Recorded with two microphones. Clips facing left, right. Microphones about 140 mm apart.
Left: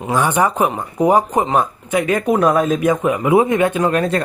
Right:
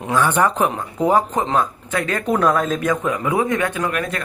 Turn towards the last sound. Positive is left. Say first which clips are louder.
# left 7 dB
turn(degrees=30)  # may be behind; listen again after turning